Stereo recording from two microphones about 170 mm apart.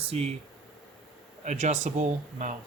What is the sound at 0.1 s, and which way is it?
Speech, 35° right (ahead or behind).